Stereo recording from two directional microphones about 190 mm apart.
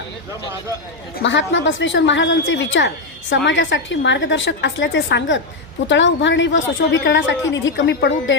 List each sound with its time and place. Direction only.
1.2 s a woman's voice: 75° left (ahead or behind)